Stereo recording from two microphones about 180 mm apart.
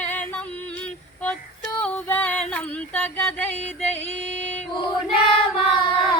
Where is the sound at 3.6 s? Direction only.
35° left (ahead or behind).